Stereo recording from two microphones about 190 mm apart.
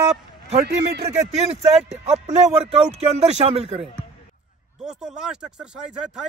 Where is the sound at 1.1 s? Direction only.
35° right (ahead or behind).